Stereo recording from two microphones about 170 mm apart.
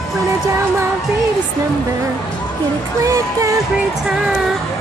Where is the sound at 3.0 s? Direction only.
20° right (ahead or behind).